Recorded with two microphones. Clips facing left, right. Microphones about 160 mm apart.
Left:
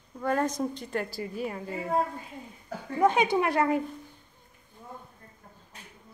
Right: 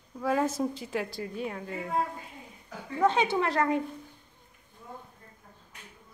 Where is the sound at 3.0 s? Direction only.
10° left (ahead or behind).